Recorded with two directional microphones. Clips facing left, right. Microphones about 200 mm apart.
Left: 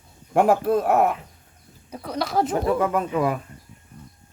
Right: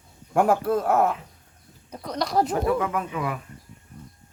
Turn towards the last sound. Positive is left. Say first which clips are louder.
# left 6 dB
turn(degrees=35)  # may be behind; listen again after turning